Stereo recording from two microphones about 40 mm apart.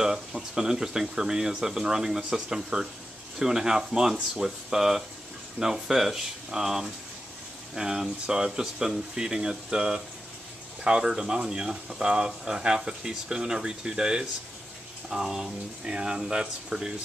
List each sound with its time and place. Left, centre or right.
0.0 s speech: centre